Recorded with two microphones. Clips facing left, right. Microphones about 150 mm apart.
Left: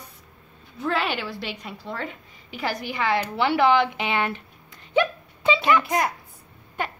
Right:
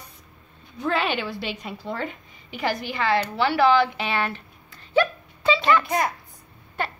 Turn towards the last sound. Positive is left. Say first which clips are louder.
# right 1 dB
turn(degrees=15)  # may be behind; listen again after turning